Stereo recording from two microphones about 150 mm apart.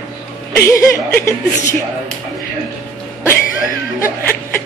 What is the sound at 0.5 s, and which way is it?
Speech, 20° left (ahead or behind).